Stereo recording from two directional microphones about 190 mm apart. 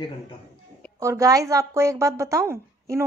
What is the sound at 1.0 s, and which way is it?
Speech, 15° right (ahead or behind).